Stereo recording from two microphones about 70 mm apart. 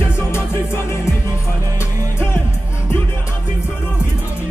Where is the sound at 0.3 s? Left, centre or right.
Left.